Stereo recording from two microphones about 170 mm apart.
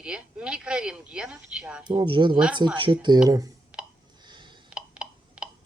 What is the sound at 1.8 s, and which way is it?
Speech, 25° right (ahead or behind).